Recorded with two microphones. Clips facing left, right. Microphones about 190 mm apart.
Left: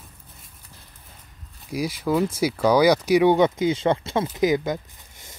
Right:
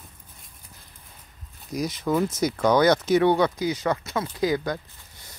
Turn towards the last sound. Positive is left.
turn(degrees=20)  # may be behind; listen again after turning